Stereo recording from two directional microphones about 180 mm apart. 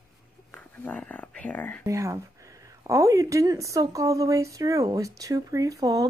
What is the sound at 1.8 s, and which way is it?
Speech, 15° right (ahead or behind).